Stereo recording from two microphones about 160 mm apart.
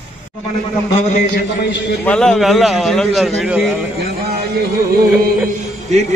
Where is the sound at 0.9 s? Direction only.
45° left (ahead or behind).